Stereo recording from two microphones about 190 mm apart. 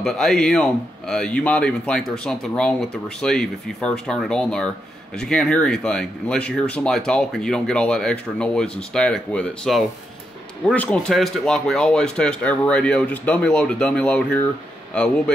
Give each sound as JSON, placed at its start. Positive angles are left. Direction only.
{"t": 0.0, "sound": "speech", "side_deg": 0}